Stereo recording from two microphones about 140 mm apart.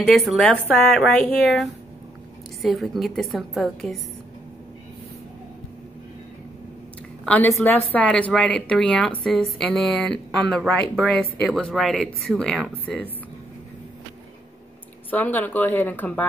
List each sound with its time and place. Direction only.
0.0 s a woman's voice: centre (ahead or behind)
7.2 s a woman's voice: 10° left (ahead or behind)
15.0 s a woman's voice: 10° left (ahead or behind)